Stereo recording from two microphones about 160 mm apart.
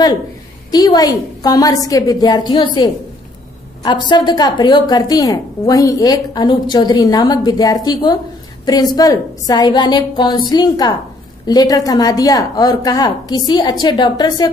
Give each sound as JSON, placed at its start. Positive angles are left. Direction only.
{"t": 0.7, "sound": "a woman's voice", "side_deg": 25}